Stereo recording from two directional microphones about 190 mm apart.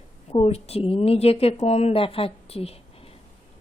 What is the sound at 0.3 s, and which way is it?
A woman's voice, 30° left (ahead or behind).